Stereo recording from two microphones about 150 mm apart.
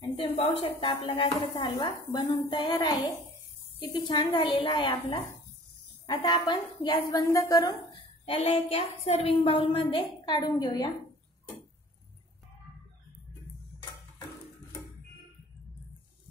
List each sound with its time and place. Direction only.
0.1 s a sound: 40° left (ahead or behind)
0.6 s dishes: 35° left (ahead or behind)
6.0 s a woman's voice: 35° left (ahead or behind)
8.3 s dishes: 40° left (ahead or behind)
10.2 s a woman's voice: 30° left (ahead or behind)